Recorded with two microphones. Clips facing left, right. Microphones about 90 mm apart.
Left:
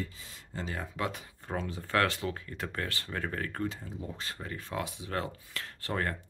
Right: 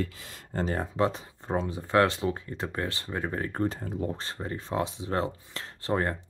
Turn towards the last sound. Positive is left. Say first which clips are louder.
# right 5 dB
turn(degrees=-25)  # may be behind; listen again after turning